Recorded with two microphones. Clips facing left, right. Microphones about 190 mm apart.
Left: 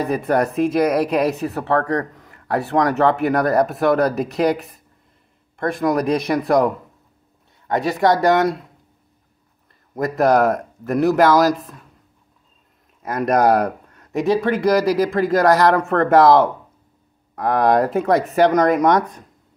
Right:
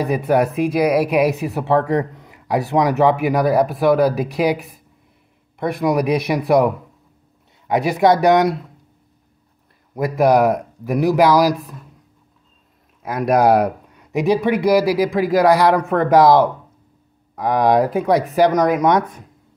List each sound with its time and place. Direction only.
0.0 s speech: 10° right (ahead or behind)
5.6 s speech: 10° right (ahead or behind)
9.9 s speech: 10° right (ahead or behind)
13.0 s speech: 5° right (ahead or behind)
17.4 s speech: 5° right (ahead or behind)